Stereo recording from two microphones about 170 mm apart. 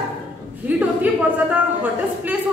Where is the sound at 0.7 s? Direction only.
10° right (ahead or behind).